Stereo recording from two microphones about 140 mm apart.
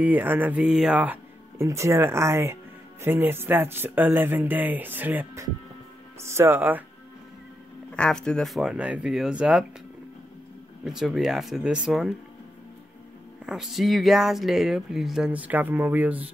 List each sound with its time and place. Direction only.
0.0 s speech: 10° right (ahead or behind)
7.9 s speech: 5° left (ahead or behind)
10.8 s speech: 5° right (ahead or behind)
13.5 s speech: centre (ahead or behind)